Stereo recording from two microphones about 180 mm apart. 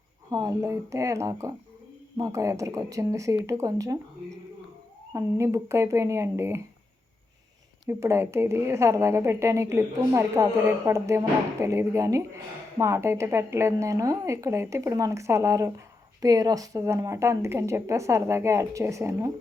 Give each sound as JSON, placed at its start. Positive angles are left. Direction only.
{"t": 0.3, "sound": "a woman's voice", "side_deg": -20}
{"t": 5.1, "sound": "a woman's voice", "side_deg": -15}
{"t": 7.9, "sound": "a woman's voice", "side_deg": -15}